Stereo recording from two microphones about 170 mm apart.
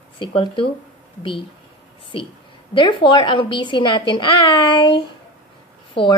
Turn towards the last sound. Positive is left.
turn(degrees=30)  # may be behind; listen again after turning